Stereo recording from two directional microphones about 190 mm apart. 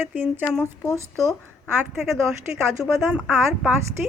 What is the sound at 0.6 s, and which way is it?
Speech, 10° left (ahead or behind).